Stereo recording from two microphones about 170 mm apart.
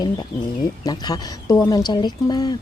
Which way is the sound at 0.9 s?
25° left (ahead or behind).